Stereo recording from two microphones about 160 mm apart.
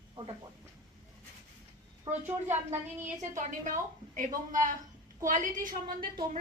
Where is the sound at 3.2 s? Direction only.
50° right (ahead or behind).